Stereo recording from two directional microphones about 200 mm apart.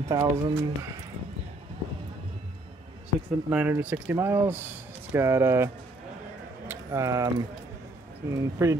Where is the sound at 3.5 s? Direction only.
10° right (ahead or behind).